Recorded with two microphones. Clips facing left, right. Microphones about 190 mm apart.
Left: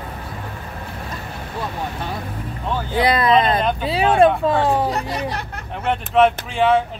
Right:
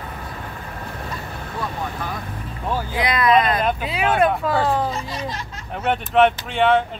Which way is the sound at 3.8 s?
30° left (ahead or behind).